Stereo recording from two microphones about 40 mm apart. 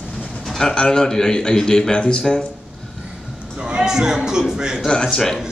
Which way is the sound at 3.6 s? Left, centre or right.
Centre.